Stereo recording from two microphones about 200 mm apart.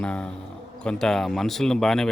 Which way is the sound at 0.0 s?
5° left (ahead or behind).